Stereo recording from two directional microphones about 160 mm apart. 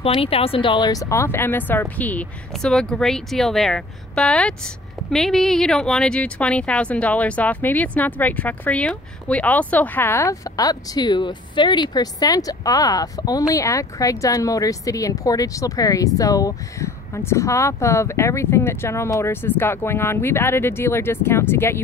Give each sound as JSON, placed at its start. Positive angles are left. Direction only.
{"t": 0.0, "sound": "speech", "side_deg": 35}